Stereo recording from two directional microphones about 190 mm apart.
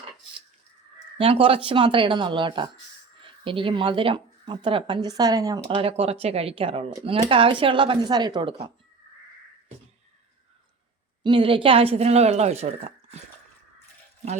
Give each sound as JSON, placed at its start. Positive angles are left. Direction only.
{"t": 1.2, "sound": "speech", "side_deg": -30}
{"t": 5.7, "sound": "speech", "side_deg": -30}
{"t": 11.2, "sound": "speech", "side_deg": -25}